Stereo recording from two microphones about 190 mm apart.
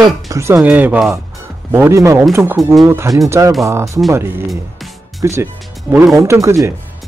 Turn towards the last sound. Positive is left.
turn(degrees=-15)  # may be behind; listen again after turning